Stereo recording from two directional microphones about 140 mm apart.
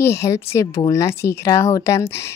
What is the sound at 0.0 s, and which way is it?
Speech, 20° left (ahead or behind).